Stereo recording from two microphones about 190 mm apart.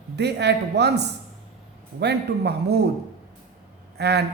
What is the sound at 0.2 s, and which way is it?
A man's voice, 60° right (ahead or behind).